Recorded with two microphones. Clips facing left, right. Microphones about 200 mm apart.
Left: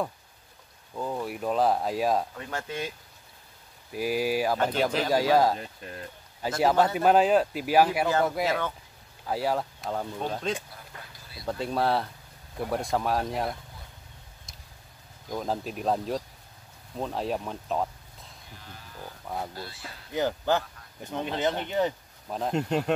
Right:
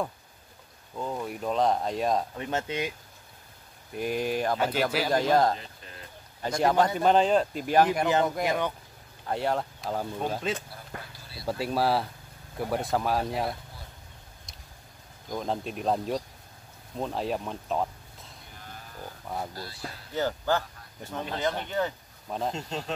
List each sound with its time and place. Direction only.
0.9 s speech: 5° left (ahead or behind)
2.3 s speech: 20° right (ahead or behind)
3.9 s speech: 5° left (ahead or behind)
4.6 s speech: 5° right (ahead or behind)
5.1 s speech: 5° left (ahead or behind)
8.5 s speech: 15° right (ahead or behind)
9.2 s speech: 5° left (ahead or behind)
10.9 s speech: 55° right (ahead or behind)
11.4 s speech: 5° right (ahead or behind)
15.3 s speech: centre (ahead or behind)
19.2 s speech: centre (ahead or behind)
19.5 s speech: 40° right (ahead or behind)
20.2 s speech: 15° left (ahead or behind)
22.5 s speech: 60° left (ahead or behind)